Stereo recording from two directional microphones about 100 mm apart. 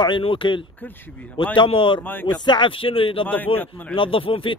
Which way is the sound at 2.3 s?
45° left (ahead or behind).